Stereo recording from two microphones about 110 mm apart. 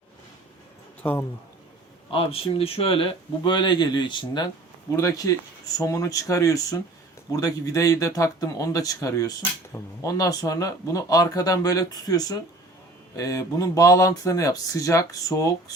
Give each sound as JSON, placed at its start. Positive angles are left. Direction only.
{"t": 2.0, "sound": "speech", "side_deg": 60}
{"t": 4.9, "sound": "speech", "side_deg": 25}